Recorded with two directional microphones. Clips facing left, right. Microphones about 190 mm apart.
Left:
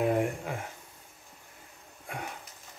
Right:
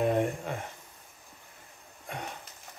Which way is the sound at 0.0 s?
5° left (ahead or behind).